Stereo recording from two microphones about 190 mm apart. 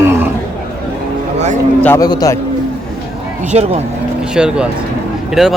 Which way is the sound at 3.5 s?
35° right (ahead or behind).